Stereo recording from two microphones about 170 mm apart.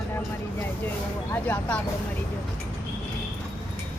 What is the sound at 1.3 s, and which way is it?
Speech, 10° left (ahead or behind).